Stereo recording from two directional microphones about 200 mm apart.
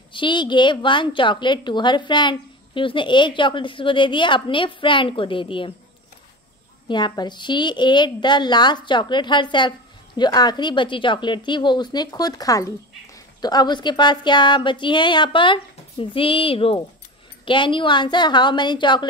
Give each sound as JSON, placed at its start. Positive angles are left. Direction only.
{"t": 0.1, "sound": "a woman's voice", "side_deg": 25}
{"t": 6.9, "sound": "a woman's voice", "side_deg": 20}